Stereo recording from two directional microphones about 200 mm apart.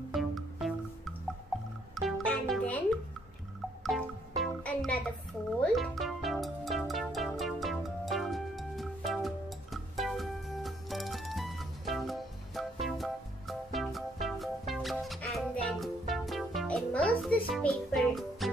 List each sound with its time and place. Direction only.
0.1 s music: centre (ahead or behind)
4.4 s music: 5° left (ahead or behind)